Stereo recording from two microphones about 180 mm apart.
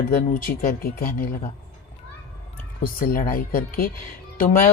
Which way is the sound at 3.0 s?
50° left (ahead or behind).